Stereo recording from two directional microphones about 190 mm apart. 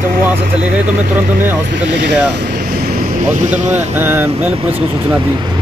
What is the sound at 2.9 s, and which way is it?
Speech, 40° right (ahead or behind).